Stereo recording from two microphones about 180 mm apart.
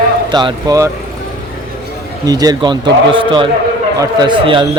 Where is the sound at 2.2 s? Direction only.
20° right (ahead or behind).